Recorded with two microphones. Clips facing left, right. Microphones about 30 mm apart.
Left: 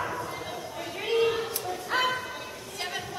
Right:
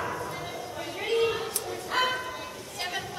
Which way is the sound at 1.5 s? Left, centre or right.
Centre.